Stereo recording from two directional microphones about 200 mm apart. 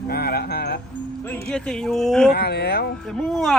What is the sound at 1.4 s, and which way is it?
Speech, 5° left (ahead or behind).